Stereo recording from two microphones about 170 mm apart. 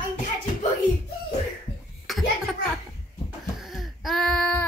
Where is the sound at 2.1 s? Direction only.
Centre (ahead or behind).